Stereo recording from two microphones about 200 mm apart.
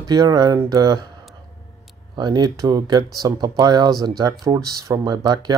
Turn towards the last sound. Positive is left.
turn(degrees=-20)  # may be behind; listen again after turning